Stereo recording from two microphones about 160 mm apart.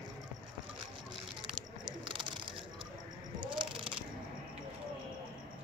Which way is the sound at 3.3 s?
30° right (ahead or behind).